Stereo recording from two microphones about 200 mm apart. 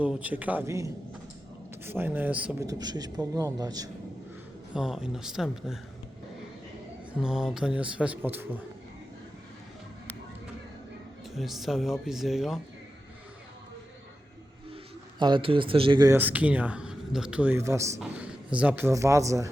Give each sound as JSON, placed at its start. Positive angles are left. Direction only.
{"t": 0.0, "sound": "speech", "side_deg": -5}
{"t": 4.7, "sound": "speech", "side_deg": -5}
{"t": 7.2, "sound": "speech", "side_deg": -5}
{"t": 11.3, "sound": "speech", "side_deg": 0}
{"t": 15.2, "sound": "speech", "side_deg": -25}